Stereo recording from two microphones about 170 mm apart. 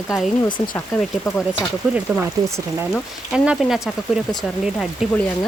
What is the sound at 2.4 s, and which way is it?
Speech, 15° right (ahead or behind).